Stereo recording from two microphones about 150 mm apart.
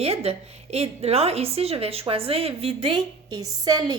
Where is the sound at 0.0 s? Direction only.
40° right (ahead or behind).